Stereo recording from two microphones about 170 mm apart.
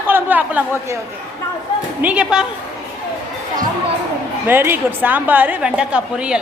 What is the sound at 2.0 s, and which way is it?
Speech, 5° right (ahead or behind).